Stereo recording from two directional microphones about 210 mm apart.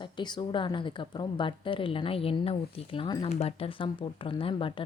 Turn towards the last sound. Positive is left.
turn(degrees=25)  # may be behind; listen again after turning